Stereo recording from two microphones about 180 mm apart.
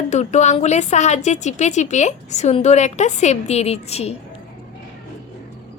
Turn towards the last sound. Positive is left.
turn(degrees=35)  # may be behind; listen again after turning